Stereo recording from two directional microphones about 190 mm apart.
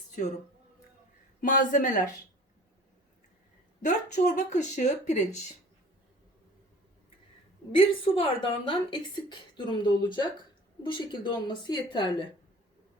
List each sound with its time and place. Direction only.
0.2 s a man's voice: 45° left (ahead or behind)
1.4 s a man's voice: 45° left (ahead or behind)
3.8 s speech: 40° left (ahead or behind)
7.7 s a woman's voice: 25° left (ahead or behind)